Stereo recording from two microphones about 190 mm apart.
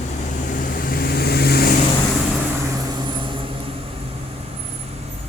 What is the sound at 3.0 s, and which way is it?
Vehicle, 25° right (ahead or behind).